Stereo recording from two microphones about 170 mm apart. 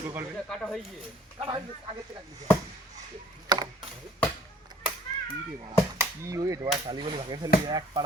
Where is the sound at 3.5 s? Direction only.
25° right (ahead or behind).